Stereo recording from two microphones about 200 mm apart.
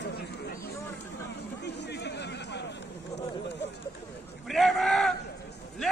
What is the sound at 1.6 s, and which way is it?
Chatter, 60° left (ahead or behind).